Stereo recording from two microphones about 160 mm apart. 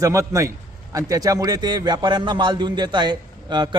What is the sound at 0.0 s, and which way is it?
A man's voice, 20° right (ahead or behind).